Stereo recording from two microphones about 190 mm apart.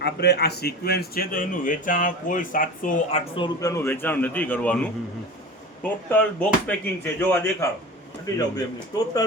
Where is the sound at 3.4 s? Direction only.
20° left (ahead or behind).